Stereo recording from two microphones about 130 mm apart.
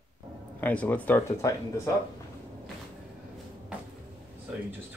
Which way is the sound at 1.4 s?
25° left (ahead or behind).